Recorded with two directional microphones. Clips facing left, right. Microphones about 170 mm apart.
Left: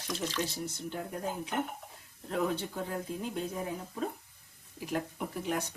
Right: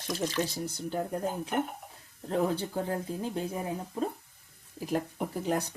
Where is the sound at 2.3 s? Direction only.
35° right (ahead or behind).